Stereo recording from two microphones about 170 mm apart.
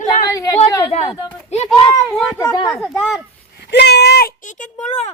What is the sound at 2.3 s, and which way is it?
Speech, 15° left (ahead or behind).